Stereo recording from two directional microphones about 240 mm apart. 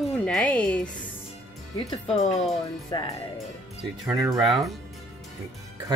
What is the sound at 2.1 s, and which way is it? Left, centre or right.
Speech, left.